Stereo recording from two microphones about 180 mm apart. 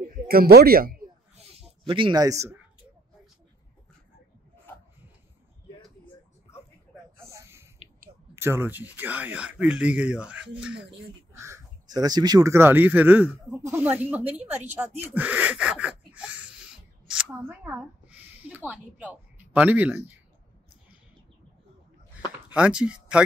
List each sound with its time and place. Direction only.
0.3 s speech: 60° right (ahead or behind)
1.6 s speech: 30° right (ahead or behind)
7.2 s a sound: 15° right (ahead or behind)
8.4 s speech: 15° right (ahead or behind)
11.3 s speech: 15° right (ahead or behind)
15.1 s gasp: 10° right (ahead or behind)
22.5 s speech: 5° right (ahead or behind)